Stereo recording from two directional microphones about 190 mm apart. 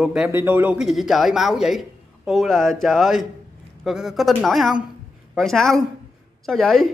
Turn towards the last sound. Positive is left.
turn(degrees=0)  # may be behind; listen again after turning